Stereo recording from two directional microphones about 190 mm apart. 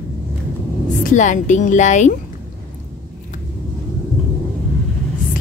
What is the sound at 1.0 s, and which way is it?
A woman's voice, 40° left (ahead or behind).